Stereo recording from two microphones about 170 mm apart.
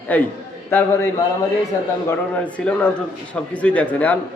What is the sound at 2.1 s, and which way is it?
A man's voice, 10° left (ahead or behind).